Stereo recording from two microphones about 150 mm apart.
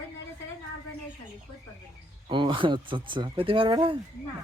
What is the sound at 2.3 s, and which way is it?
Speech, 30° right (ahead or behind).